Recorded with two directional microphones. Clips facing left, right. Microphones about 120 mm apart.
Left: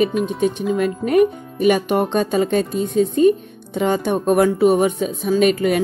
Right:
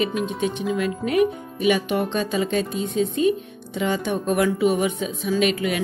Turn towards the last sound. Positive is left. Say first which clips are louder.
# left 6 dB
turn(degrees=45)  # may be behind; listen again after turning